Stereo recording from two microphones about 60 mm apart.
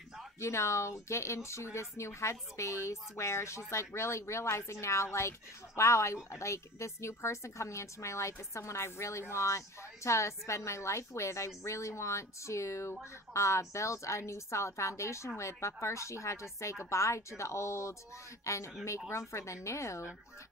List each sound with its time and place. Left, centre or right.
0.4 s a woman's voice: left